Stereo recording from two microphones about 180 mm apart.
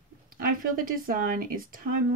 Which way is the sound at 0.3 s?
50° right (ahead or behind).